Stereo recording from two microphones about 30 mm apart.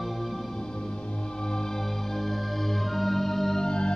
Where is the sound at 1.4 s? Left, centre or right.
Left.